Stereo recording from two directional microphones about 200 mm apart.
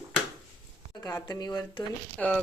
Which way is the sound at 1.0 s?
15° left (ahead or behind).